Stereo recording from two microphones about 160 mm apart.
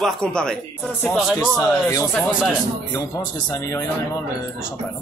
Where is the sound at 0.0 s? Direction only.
5° left (ahead or behind).